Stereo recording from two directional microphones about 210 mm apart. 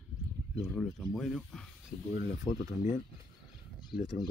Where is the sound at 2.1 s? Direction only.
35° left (ahead or behind).